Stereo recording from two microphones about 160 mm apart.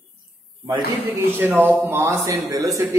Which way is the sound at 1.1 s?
15° right (ahead or behind).